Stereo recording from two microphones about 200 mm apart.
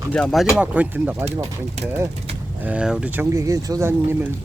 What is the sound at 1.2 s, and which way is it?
Speech, 30° right (ahead or behind).